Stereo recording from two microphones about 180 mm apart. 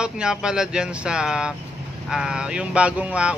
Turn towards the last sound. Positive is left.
turn(degrees=-5)  # may be behind; listen again after turning